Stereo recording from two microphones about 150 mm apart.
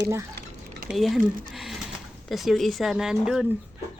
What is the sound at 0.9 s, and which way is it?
Speech, centre (ahead or behind).